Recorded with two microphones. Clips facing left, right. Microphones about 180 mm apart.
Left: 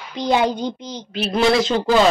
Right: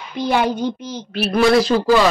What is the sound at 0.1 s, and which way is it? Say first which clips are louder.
A child's voice: even; 15° left (ahead or behind).